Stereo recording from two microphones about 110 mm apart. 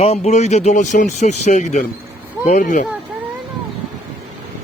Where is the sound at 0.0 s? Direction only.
80° left.